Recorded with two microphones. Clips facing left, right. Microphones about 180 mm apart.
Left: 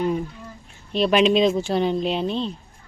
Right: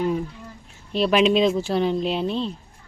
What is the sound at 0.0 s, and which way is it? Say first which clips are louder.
Speech: even; centre (ahead or behind).